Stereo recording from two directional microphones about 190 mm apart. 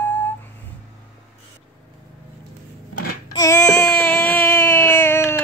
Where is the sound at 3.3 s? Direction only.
15° left (ahead or behind).